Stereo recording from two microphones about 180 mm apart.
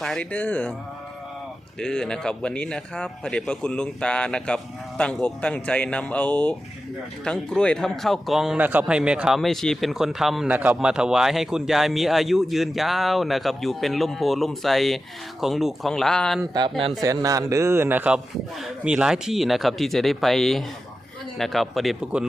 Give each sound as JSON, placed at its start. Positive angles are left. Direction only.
{"t": 0.0, "sound": "speech", "side_deg": 5}
{"t": 1.8, "sound": "speech", "side_deg": 5}
{"t": 16.4, "sound": "a man's voice", "side_deg": -25}